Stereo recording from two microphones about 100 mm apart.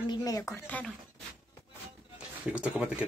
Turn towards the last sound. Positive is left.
turn(degrees=-10)  # may be behind; listen again after turning